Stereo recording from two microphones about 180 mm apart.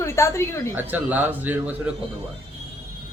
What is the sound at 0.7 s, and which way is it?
A man's voice, 10° right (ahead or behind).